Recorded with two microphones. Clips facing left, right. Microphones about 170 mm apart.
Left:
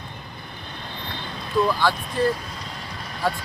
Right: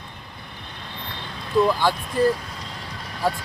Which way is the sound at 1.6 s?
15° right (ahead or behind).